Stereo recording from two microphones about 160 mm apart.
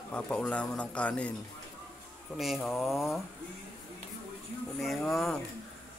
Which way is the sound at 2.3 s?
Centre (ahead or behind).